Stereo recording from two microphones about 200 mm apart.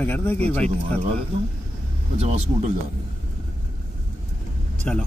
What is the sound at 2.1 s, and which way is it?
Speech, 35° right (ahead or behind).